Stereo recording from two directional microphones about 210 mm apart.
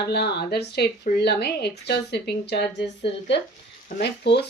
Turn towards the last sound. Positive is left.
turn(degrees=50)  # may be behind; listen again after turning